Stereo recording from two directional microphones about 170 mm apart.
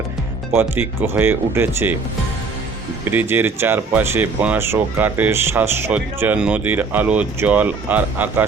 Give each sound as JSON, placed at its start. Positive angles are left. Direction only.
{"t": 0.5, "sound": "speech", "side_deg": -15}
{"t": 3.0, "sound": "speech", "side_deg": -10}